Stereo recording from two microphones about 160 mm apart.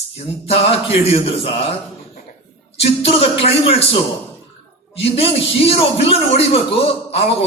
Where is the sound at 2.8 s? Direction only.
40° left (ahead or behind).